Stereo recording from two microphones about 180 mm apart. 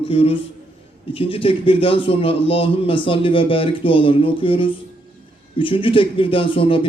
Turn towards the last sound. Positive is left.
turn(degrees=30)  # may be behind; listen again after turning